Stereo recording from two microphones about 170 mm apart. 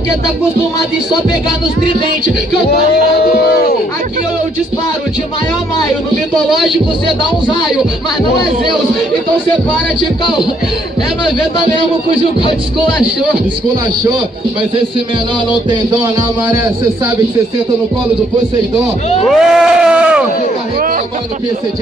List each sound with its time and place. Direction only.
2.7 s speech: 70° left (ahead or behind)
6.5 s speech: centre (ahead or behind)
16.0 s speech: 20° right (ahead or behind)
19.2 s speech: centre (ahead or behind)